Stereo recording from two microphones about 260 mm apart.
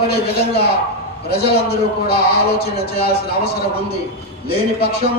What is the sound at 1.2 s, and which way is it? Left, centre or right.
A man's voice, left.